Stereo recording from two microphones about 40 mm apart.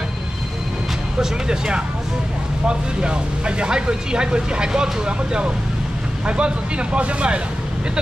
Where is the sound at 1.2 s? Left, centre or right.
Centre.